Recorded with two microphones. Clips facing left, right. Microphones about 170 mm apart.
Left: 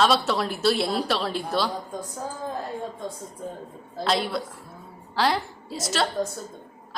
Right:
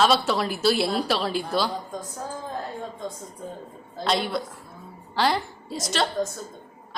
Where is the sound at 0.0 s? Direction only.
Centre (ahead or behind).